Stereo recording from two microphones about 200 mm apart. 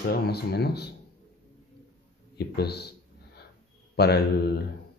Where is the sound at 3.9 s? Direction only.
55° left (ahead or behind).